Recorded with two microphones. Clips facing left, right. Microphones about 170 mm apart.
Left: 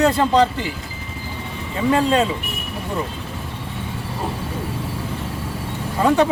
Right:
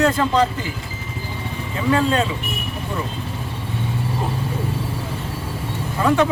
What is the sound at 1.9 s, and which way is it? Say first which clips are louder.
Speech: left 1 dB; 30° left (ahead or behind).